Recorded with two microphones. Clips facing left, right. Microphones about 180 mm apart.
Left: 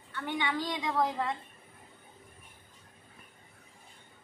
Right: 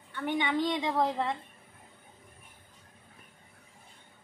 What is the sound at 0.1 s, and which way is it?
A woman's voice, 20° right (ahead or behind).